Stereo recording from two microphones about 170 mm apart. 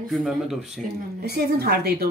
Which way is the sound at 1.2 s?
70° right (ahead or behind).